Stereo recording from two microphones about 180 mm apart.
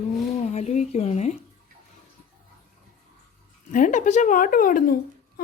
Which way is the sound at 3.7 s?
45° left (ahead or behind).